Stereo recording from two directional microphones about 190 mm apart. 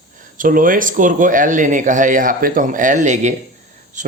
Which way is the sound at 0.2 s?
45° right (ahead or behind).